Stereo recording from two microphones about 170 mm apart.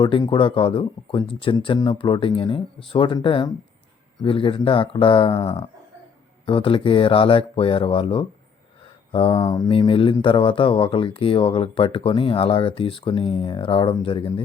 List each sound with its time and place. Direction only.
0.0 s speech: 25° left (ahead or behind)
9.4 s speech: 20° left (ahead or behind)
9.6 s speech: 30° left (ahead or behind)